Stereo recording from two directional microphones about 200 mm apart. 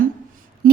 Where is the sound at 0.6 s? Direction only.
45° right (ahead or behind).